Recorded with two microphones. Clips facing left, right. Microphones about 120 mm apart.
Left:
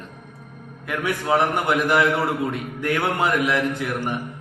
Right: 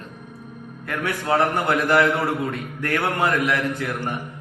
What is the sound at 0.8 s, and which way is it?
Mantra, 10° left (ahead or behind).